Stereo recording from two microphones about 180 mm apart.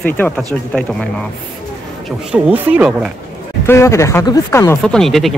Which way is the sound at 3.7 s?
15° left (ahead or behind).